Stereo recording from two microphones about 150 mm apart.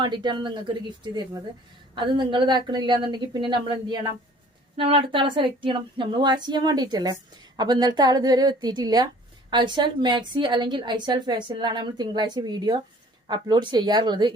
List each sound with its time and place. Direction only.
0.0 s a woman's voice: 30° right (ahead or behind)